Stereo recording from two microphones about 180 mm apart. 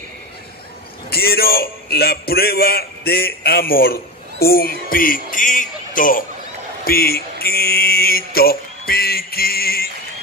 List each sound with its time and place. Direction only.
1.1 s a man's voice: 60° left (ahead or behind)
6.8 s mantra: 55° left (ahead or behind)